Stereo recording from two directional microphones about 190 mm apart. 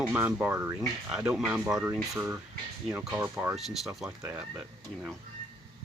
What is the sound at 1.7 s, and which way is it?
Speech, 20° right (ahead or behind).